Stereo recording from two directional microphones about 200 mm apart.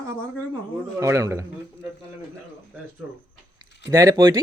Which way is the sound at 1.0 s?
15° right (ahead or behind).